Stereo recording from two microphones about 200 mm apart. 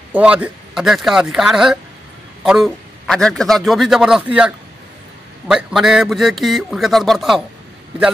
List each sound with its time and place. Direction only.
0.1 s a man's voice: 5° right (ahead or behind)